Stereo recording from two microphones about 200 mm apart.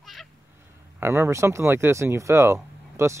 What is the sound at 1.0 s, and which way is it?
Speech, 15° right (ahead or behind).